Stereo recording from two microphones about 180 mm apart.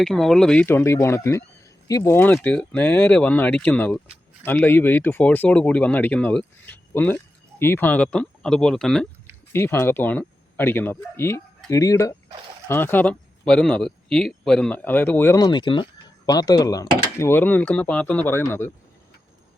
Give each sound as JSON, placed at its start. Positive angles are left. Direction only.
{"t": 0.0, "sound": "speech", "side_deg": 0}